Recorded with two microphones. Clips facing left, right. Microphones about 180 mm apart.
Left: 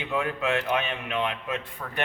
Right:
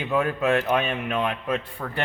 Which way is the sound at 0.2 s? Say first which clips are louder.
Right 5 dB; 45° right (ahead or behind).